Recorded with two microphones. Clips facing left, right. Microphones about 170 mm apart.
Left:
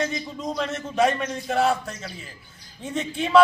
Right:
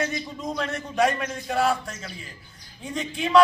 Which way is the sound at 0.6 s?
Centre (ahead or behind).